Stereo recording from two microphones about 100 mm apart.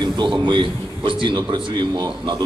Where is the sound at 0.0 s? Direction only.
50° right (ahead or behind).